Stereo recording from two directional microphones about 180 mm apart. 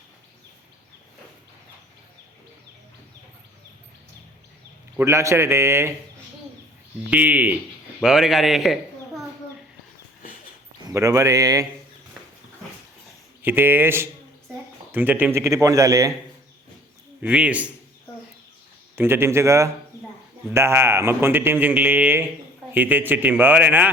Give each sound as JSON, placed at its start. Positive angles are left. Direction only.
{"t": 4.9, "sound": "a man's voice", "side_deg": -15}
{"t": 7.1, "sound": "a man's voice", "side_deg": -10}
{"t": 10.9, "sound": "speech", "side_deg": -15}
{"t": 13.4, "sound": "a man's voice", "side_deg": -10}
{"t": 17.2, "sound": "a man's voice", "side_deg": -5}
{"t": 18.9, "sound": "a man's voice", "side_deg": -15}